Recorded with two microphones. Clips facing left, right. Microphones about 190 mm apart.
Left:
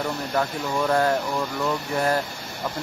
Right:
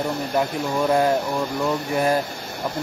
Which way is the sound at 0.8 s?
15° right (ahead or behind).